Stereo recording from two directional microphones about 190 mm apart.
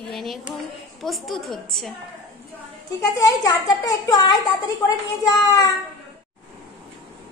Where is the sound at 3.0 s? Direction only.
15° left (ahead or behind).